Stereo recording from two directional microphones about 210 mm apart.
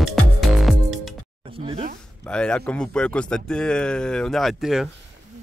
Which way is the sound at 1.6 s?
25° right (ahead or behind).